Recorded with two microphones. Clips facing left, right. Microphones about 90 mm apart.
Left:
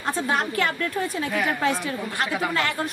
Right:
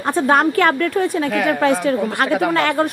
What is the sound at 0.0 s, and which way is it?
A woman's voice, 55° right (ahead or behind).